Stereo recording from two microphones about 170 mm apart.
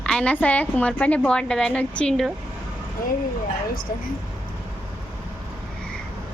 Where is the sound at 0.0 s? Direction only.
5° left (ahead or behind).